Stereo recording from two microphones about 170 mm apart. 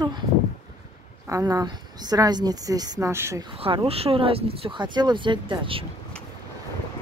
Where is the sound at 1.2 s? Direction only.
20° right (ahead or behind).